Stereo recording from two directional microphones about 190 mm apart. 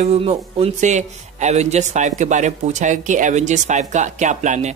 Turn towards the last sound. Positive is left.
turn(degrees=-40)  # may be behind; listen again after turning